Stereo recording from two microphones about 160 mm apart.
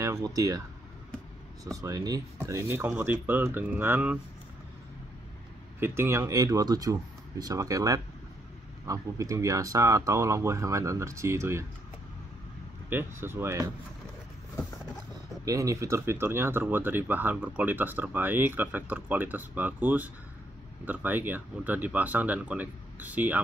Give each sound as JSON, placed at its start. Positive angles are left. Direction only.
{"t": 0.0, "sound": "speech", "side_deg": -20}
{"t": 1.6, "sound": "speech", "side_deg": -20}
{"t": 5.8, "sound": "speech", "side_deg": -15}
{"t": 12.9, "sound": "speech", "side_deg": -15}
{"t": 15.4, "sound": "speech", "side_deg": -20}